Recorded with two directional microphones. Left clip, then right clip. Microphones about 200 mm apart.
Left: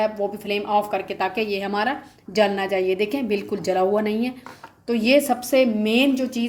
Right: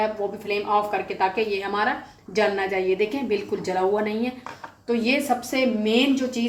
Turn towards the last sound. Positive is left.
turn(degrees=45)  # may be behind; listen again after turning